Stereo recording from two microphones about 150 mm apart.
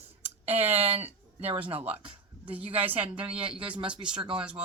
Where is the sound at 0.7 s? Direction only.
45° right (ahead or behind).